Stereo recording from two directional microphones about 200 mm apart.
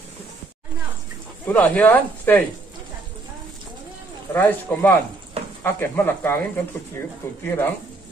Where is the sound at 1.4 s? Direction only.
10° left (ahead or behind).